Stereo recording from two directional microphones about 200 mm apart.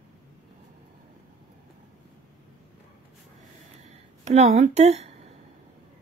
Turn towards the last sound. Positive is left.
turn(degrees=-35)  # may be behind; listen again after turning